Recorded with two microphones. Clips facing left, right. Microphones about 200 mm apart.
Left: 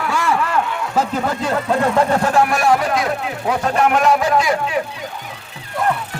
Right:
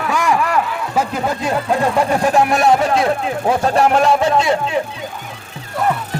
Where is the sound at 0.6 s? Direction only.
5° right (ahead or behind).